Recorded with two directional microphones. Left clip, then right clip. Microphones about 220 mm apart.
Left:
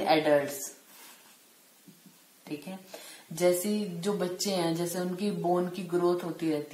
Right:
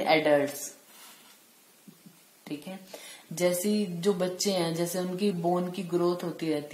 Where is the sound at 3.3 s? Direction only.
35° right (ahead or behind).